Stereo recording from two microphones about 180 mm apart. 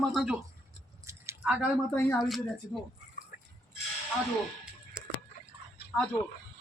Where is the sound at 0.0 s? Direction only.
Centre (ahead or behind).